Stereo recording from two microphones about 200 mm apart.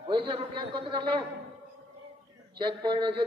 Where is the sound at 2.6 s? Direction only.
25° right (ahead or behind).